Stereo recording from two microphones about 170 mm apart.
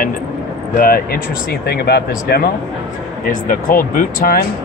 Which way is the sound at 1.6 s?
70° left (ahead or behind).